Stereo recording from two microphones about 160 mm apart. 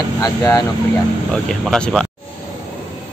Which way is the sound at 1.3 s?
5° left (ahead or behind).